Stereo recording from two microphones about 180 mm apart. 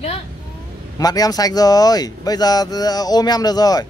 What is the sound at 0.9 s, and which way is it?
Speech, 20° left (ahead or behind).